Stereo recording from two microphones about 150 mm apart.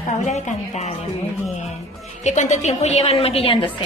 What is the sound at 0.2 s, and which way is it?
Speech, 50° left (ahead or behind).